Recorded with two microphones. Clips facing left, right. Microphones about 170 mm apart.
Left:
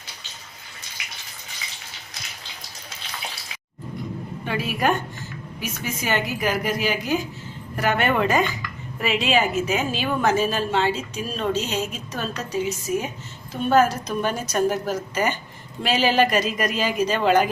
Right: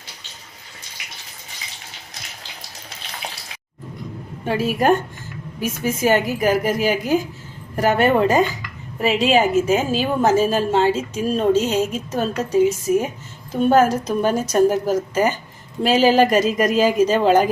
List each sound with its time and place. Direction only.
4.4 s speech: 40° right (ahead or behind)